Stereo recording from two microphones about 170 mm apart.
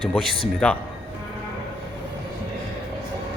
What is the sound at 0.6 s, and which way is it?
Speech, 5° left (ahead or behind).